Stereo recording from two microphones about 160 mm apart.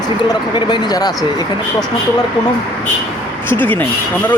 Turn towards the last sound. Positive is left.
turn(degrees=10)  # may be behind; listen again after turning